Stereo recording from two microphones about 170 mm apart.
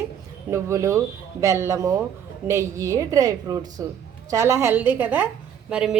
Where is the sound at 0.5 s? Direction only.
15° right (ahead or behind).